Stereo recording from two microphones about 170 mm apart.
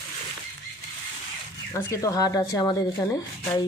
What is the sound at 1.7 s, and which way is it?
Speech, 20° left (ahead or behind).